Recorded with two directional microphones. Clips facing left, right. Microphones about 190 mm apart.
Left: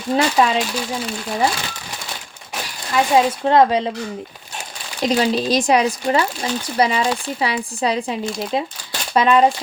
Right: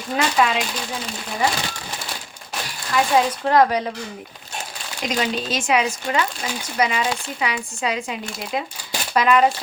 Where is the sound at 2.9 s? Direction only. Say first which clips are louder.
Left 3 dB; 25° left (ahead or behind).